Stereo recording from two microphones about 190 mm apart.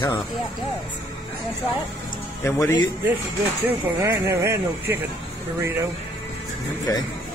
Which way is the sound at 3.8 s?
10° right (ahead or behind).